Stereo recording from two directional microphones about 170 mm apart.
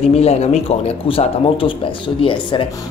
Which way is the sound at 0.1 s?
40° left (ahead or behind).